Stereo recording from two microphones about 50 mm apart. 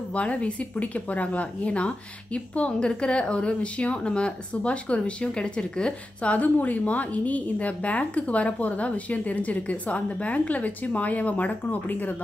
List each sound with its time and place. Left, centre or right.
0.1 s speech: left
6.3 s speech: left